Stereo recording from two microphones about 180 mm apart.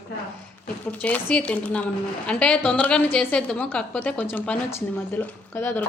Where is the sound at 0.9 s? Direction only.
10° left (ahead or behind).